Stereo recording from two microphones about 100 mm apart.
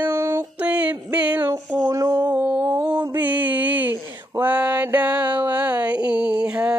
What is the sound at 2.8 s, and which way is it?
Mantra, 35° right (ahead or behind).